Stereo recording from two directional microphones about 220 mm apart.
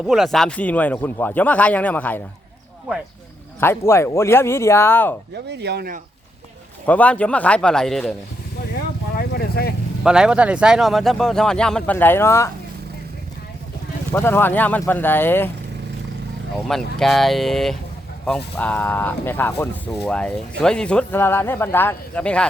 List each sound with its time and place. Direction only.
0.1 s speech: centre (ahead or behind)
3.6 s speech: 10° left (ahead or behind)
5.5 s speech: 50° right (ahead or behind)
6.8 s speech: 5° left (ahead or behind)
8.7 s speech: 45° left (ahead or behind)
10.0 s speech: 5° right (ahead or behind); by 12.5 s 10° left (ahead or behind)
14.1 s speech: 10° left (ahead or behind)
16.6 s speech: centre (ahead or behind)